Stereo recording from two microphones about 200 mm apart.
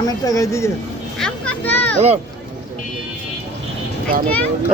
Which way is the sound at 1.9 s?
35° right (ahead or behind).